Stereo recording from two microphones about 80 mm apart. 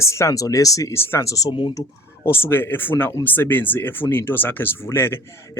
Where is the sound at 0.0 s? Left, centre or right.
Left.